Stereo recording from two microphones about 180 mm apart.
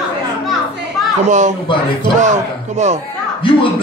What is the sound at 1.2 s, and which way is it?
Speech, 40° right (ahead or behind).